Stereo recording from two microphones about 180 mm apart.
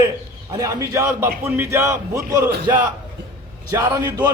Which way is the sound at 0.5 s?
20° right (ahead or behind).